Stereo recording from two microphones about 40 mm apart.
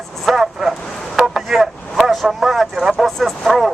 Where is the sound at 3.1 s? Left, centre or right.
Centre.